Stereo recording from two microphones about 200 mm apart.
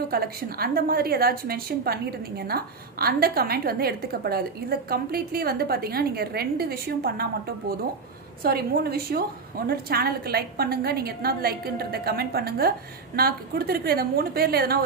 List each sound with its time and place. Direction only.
0.1 s a woman's voice: 50° right (ahead or behind)
8.4 s a woman's voice: 50° right (ahead or behind)